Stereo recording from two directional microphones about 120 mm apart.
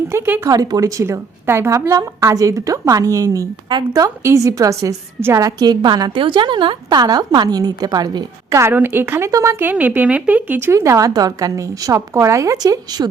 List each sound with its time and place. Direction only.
0.1 s a woman's voice: 20° right (ahead or behind)
0.4 s a woman's voice: 30° right (ahead or behind); by 10.6 s 10° right (ahead or behind)
10.7 s a woman's voice: 25° right (ahead or behind)